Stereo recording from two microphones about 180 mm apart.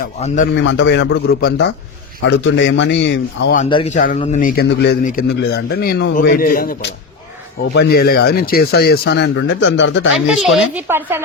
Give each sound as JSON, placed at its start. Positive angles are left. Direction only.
{"t": 0.0, "sound": "a man's voice", "side_deg": 45}
{"t": 0.5, "sound": "speech", "side_deg": 90}
{"t": 2.2, "sound": "a man's voice", "side_deg": 85}
{"t": 3.8, "sound": "a man's voice", "side_deg": 45}
{"t": 6.2, "sound": "a man's voice", "side_deg": 55}
{"t": 7.7, "sound": "speech", "side_deg": 65}
{"t": 10.2, "sound": "speech", "side_deg": 0}
{"t": 10.8, "sound": "speech", "side_deg": -15}